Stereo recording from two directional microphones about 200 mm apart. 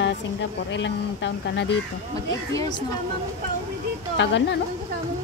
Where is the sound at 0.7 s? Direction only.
65° left (ahead or behind).